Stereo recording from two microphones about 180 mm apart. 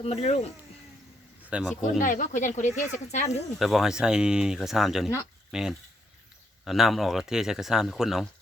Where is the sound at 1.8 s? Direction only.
45° left (ahead or behind).